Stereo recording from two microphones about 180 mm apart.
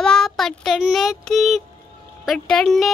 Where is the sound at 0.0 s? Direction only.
5° left (ahead or behind).